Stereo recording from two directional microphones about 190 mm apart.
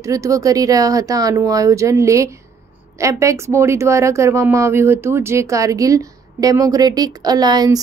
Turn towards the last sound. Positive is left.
turn(degrees=-20)  # may be behind; listen again after turning